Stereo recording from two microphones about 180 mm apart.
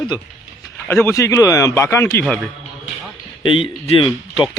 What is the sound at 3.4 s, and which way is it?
Speech, 30° left (ahead or behind).